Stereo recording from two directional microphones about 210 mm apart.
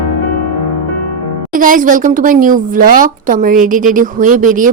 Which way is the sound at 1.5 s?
40° right (ahead or behind).